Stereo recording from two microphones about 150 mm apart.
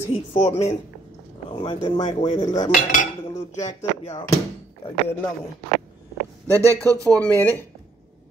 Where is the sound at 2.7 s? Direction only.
65° left (ahead or behind).